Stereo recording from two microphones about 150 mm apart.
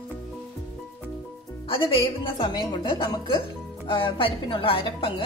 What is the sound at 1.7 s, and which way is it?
A woman's voice, 35° left (ahead or behind).